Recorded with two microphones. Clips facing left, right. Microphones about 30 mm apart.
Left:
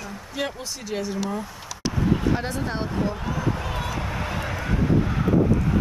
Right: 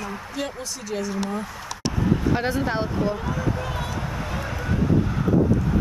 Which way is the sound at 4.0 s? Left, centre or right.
Centre.